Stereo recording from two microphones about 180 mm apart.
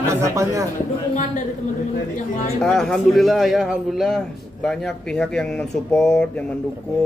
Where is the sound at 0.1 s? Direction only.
15° right (ahead or behind).